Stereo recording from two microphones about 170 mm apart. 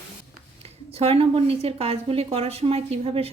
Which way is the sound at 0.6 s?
35° right (ahead or behind).